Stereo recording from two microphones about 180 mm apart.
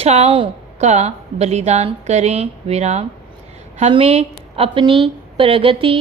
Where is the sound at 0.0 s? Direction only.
35° right (ahead or behind).